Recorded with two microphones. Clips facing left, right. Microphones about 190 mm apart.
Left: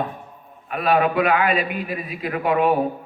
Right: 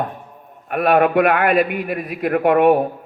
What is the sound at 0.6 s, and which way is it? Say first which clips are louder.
Speech: right 4 dB; 60° right (ahead or behind).